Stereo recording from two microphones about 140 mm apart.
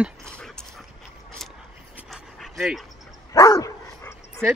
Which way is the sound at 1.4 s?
Centre (ahead or behind).